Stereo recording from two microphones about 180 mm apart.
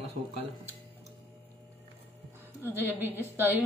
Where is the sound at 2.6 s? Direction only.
10° right (ahead or behind).